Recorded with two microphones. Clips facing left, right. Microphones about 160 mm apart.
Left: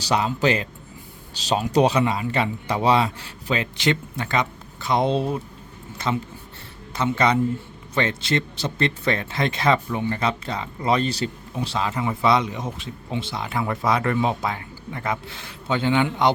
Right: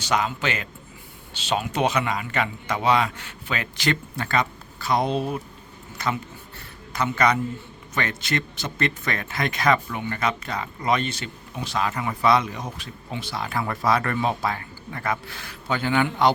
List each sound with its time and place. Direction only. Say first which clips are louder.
0.0 s speech: left 3 dB; 35° left (ahead or behind)